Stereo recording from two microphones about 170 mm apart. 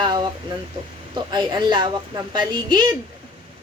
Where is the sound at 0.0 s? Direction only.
25° right (ahead or behind).